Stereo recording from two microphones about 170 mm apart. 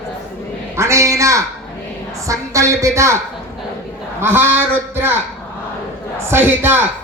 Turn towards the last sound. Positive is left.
turn(degrees=-10)  # may be behind; listen again after turning